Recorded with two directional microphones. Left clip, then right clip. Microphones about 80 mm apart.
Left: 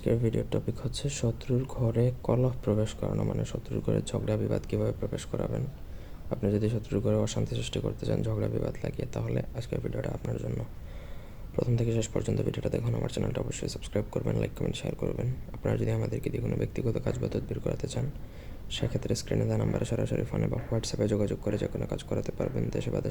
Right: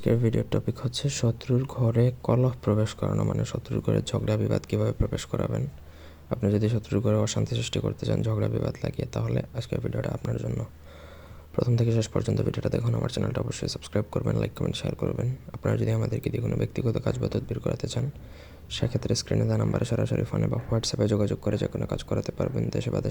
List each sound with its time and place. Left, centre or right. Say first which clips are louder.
0.0 s speech: right 3 dB; right
3.1 s speech: right 3 dB; right
3.4 s speech: right 3 dB; right
11.5 s speech: right 3 dB; right